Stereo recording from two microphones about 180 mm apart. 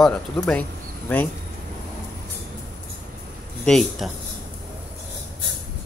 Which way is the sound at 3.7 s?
Centre (ahead or behind).